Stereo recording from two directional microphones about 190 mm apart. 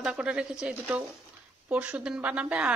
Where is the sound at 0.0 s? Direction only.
5° right (ahead or behind).